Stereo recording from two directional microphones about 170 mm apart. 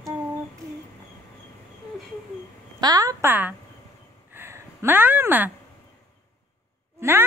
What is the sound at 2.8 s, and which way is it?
Speech, 20° right (ahead or behind).